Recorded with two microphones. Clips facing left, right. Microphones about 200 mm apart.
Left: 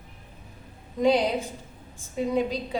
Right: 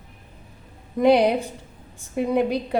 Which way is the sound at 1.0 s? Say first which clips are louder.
Right 5 dB; 65° right (ahead or behind).